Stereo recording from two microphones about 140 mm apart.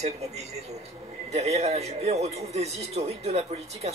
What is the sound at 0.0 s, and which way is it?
Speech, 50° right (ahead or behind).